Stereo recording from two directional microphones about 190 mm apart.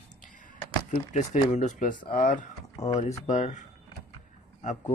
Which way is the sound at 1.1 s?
35° left (ahead or behind).